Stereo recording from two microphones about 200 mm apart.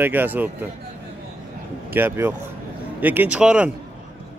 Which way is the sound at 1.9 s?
10° right (ahead or behind).